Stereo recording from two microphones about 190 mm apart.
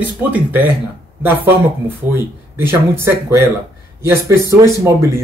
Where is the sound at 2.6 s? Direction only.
10° right (ahead or behind).